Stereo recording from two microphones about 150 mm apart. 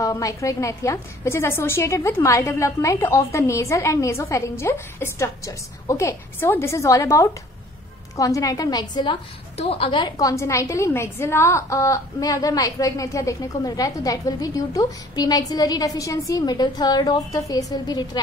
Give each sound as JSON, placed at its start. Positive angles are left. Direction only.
{"t": 0.0, "sound": "a woman's voice", "side_deg": 20}